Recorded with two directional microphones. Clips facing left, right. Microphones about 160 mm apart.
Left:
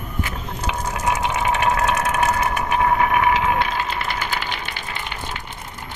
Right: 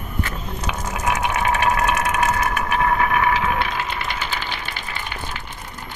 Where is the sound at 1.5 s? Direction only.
25° left (ahead or behind).